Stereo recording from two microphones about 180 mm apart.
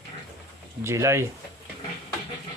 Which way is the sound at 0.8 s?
15° right (ahead or behind).